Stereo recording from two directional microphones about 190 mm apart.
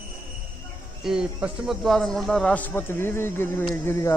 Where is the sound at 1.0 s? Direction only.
5° right (ahead or behind); by 4.1 s 15° left (ahead or behind).